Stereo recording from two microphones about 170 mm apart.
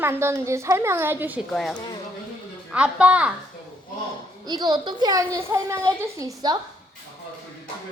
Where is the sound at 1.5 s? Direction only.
5° left (ahead or behind).